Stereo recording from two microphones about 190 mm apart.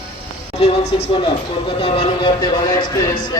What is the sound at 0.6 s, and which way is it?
A man's voice, 35° left (ahead or behind).